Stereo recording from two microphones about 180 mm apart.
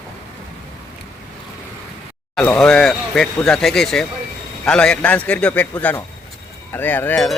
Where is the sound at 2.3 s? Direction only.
5° left (ahead or behind).